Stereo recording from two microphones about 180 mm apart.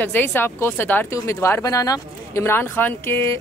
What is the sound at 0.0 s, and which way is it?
Speech, 10° left (ahead or behind).